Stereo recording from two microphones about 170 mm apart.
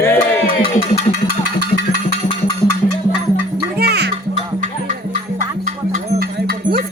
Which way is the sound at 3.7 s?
70° right (ahead or behind).